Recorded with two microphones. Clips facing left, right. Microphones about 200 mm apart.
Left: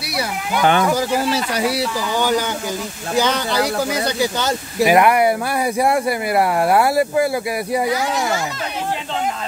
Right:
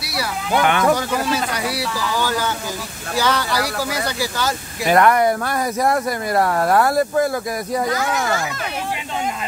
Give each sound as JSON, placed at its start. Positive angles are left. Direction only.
{"t": 0.2, "sound": "speech", "side_deg": 30}
{"t": 4.8, "sound": "speech", "side_deg": 10}